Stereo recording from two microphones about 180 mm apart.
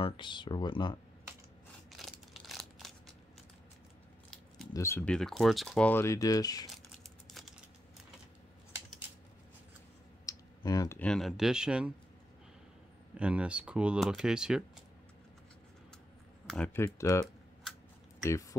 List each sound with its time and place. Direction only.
0.0 s speech: 25° left (ahead or behind)
1.9 s a sound: centre (ahead or behind)
4.7 s speech: 15° left (ahead or behind)
10.2 s clicking: 20° left (ahead or behind)
11.0 s speech: 5° left (ahead or behind)
13.1 s speech: 5° right (ahead or behind)
16.4 s speech: 5° left (ahead or behind)